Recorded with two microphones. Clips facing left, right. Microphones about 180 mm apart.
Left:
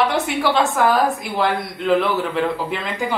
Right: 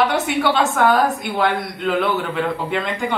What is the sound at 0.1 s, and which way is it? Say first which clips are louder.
A woman's voice: even; centre (ahead or behind).